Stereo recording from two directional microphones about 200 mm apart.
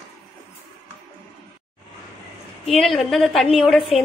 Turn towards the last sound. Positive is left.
turn(degrees=30)  # may be behind; listen again after turning